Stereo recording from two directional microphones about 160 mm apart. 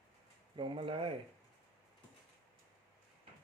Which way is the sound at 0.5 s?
30° right (ahead or behind).